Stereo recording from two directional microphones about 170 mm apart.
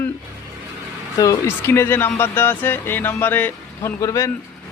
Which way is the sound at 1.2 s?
20° left (ahead or behind).